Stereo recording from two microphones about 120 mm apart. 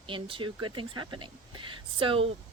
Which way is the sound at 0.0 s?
45° right (ahead or behind).